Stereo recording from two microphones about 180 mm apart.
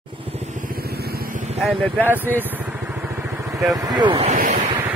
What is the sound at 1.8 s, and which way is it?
Speech, 10° left (ahead or behind).